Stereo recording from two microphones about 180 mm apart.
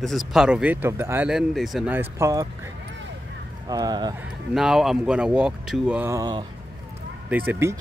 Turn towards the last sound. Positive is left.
turn(degrees=-15)  # may be behind; listen again after turning